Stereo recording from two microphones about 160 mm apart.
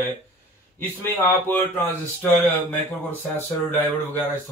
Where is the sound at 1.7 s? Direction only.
10° left (ahead or behind).